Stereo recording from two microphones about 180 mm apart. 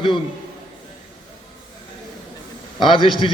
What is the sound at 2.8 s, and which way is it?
Speech, 25° left (ahead or behind).